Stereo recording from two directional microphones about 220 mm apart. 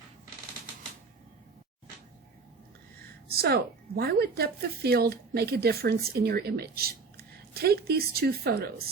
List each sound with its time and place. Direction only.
3.2 s a woman's voice: 45° right (ahead or behind)